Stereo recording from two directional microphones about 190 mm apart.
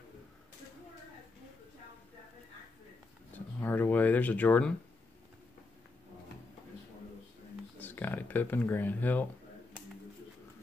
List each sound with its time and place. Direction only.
3.3 s speech: 10° left (ahead or behind)
7.8 s speech: 10° left (ahead or behind)